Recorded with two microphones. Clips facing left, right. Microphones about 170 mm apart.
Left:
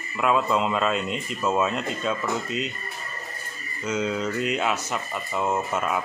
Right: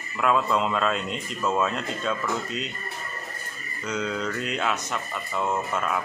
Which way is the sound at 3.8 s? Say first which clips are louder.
Left 3 dB; 5° left (ahead or behind).